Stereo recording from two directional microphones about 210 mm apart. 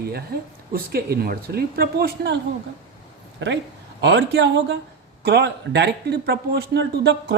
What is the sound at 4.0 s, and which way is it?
A man's voice, 55° right (ahead or behind).